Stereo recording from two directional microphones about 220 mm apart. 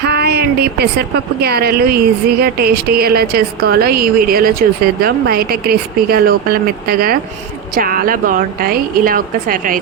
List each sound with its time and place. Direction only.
0.1 s a woman's voice: 45° right (ahead or behind)